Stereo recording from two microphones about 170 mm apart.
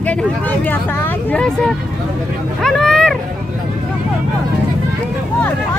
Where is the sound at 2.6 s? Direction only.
5° left (ahead or behind).